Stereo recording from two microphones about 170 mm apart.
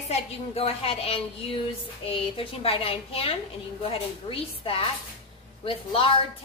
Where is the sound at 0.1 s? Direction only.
35° left (ahead or behind).